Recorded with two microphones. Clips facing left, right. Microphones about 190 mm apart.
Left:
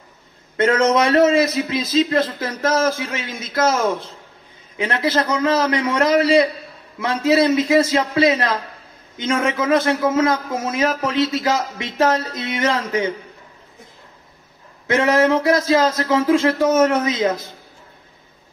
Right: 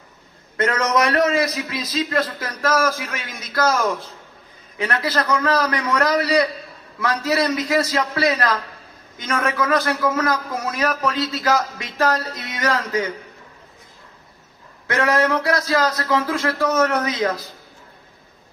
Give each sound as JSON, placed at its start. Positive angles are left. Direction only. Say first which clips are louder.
{"t": 0.6, "sound": "a man's voice", "louder": "left 4 dB", "side_deg": 25}
{"t": 14.9, "sound": "a man's voice", "louder": "left 3 dB", "side_deg": 25}